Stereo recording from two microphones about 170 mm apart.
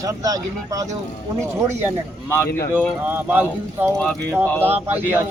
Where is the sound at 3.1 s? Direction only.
10° right (ahead or behind).